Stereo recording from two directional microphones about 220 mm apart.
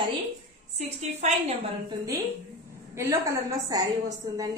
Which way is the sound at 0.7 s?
30° right (ahead or behind).